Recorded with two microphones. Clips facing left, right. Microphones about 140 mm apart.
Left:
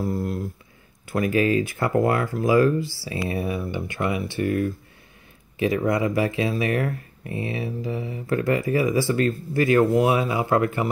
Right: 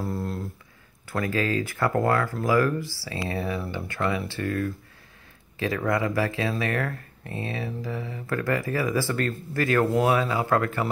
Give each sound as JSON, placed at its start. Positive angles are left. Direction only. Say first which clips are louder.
{"t": 1.0, "sound": "speech", "louder": "left 5 dB", "side_deg": 20}